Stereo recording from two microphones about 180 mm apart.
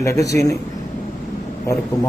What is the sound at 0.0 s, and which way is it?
Speech, 15° left (ahead or behind).